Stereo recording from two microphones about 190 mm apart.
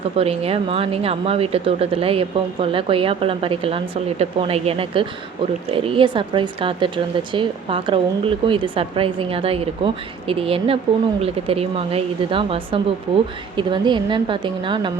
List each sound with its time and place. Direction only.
0.2 s speech: 30° right (ahead or behind)